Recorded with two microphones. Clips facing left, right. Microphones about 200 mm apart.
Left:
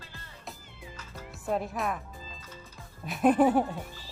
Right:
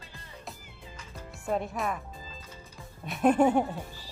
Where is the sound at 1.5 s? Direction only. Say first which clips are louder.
Even; centre (ahead or behind).